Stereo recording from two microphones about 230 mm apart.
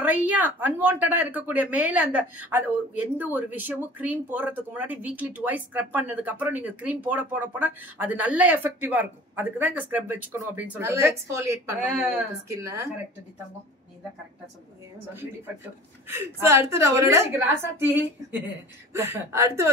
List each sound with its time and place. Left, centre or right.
0.0 s speech: centre
16.1 s speech: centre